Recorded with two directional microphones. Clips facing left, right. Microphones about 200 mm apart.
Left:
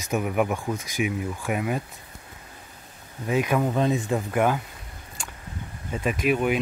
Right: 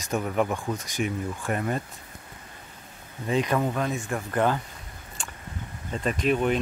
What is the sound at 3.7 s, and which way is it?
Speech, 25° left (ahead or behind).